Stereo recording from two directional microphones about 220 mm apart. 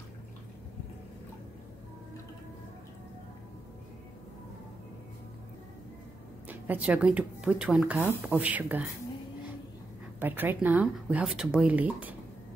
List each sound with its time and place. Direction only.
6.4 s speech: 5° right (ahead or behind)
10.2 s speech: 10° right (ahead or behind)